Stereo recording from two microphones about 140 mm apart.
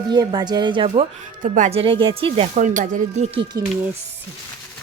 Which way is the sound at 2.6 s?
65° right (ahead or behind).